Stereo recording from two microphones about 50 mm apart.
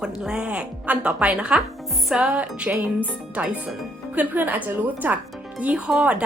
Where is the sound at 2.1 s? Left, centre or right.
Centre.